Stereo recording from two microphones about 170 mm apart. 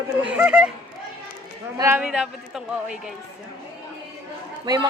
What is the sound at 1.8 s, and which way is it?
Speech, 10° right (ahead or behind).